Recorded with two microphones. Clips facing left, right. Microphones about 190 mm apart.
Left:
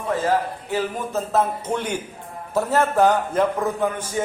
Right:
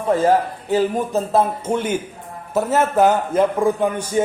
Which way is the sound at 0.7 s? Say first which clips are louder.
Right 7 dB; 30° right (ahead or behind).